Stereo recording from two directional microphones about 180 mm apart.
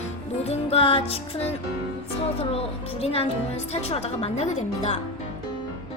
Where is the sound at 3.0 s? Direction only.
35° left (ahead or behind).